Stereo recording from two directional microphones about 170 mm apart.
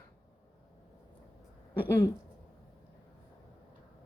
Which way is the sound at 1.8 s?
15° left (ahead or behind).